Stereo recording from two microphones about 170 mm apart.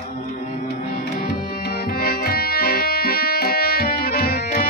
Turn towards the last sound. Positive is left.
turn(degrees=60)  # may be behind; listen again after turning